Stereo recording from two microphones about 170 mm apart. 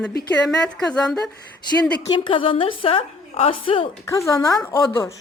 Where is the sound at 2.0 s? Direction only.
30° left (ahead or behind).